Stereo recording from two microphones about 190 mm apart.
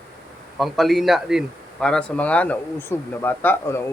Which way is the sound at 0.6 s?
Centre (ahead or behind).